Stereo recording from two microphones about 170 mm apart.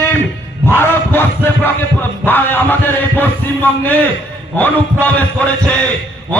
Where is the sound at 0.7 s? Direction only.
10° left (ahead or behind).